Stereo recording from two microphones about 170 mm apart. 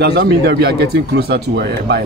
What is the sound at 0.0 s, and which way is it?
Speech, 75° right (ahead or behind).